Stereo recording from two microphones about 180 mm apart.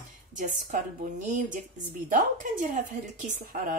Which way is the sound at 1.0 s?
45° right (ahead or behind).